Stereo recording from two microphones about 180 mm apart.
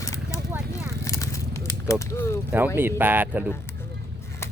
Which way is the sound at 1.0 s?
15° left (ahead or behind).